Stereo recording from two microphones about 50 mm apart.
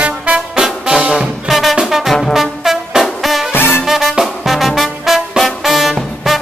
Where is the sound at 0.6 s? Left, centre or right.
Centre.